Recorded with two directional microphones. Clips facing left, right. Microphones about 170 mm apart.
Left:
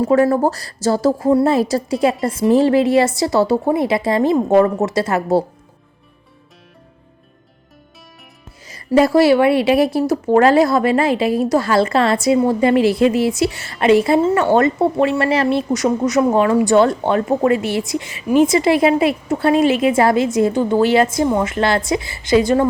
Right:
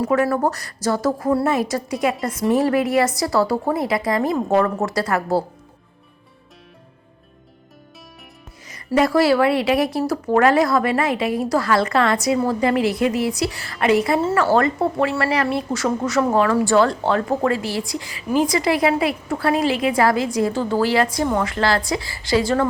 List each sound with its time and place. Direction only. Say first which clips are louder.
0.0 s a woman's voice: left 5 dB; 30° left (ahead or behind)
8.9 s a woman's voice: left 4 dB; 25° left (ahead or behind)